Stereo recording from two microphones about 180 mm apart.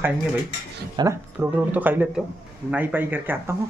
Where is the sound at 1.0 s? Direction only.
25° right (ahead or behind).